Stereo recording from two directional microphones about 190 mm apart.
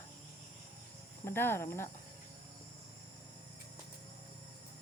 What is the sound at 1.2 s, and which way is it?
Speech, 10° left (ahead or behind).